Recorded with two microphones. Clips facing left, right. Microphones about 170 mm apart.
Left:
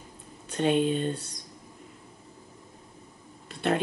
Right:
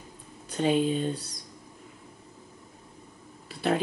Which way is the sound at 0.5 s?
Centre (ahead or behind).